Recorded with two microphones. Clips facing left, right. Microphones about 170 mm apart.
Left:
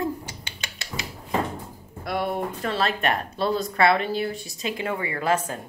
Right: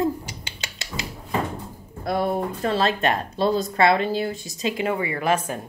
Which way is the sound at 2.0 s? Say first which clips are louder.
Right 3 dB; 40° right (ahead or behind).